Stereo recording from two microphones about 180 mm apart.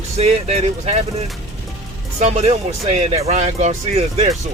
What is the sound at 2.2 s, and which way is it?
Speech, 35° right (ahead or behind).